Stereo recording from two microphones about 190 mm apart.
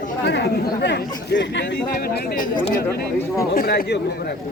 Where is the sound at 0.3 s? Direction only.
65° left (ahead or behind).